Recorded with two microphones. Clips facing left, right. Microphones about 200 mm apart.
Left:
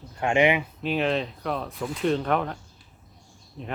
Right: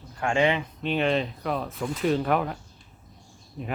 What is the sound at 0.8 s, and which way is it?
Speech, centre (ahead or behind).